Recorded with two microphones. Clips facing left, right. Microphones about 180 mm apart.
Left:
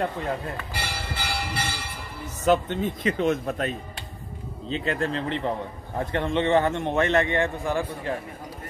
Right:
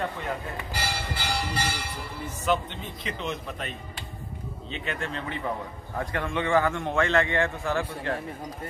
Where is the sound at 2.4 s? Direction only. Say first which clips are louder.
Left 6 dB; 45° left (ahead or behind); by 8.1 s 15° left (ahead or behind).